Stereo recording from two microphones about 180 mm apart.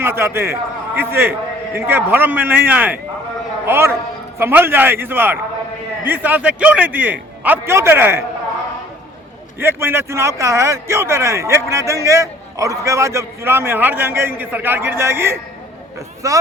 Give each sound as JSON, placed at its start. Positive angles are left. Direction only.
{"t": 0.0, "sound": "a man's voice", "side_deg": -15}
{"t": 9.6, "sound": "a man's voice", "side_deg": -15}